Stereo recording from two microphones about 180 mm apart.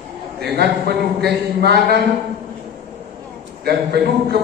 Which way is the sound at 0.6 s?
65° right (ahead or behind).